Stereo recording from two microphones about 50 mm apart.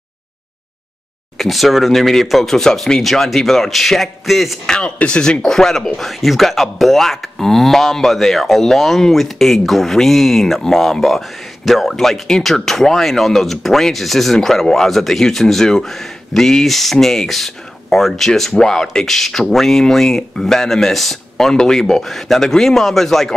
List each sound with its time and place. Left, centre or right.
1.4 s speech: centre
4.6 s speech: centre
5.4 s speech: centre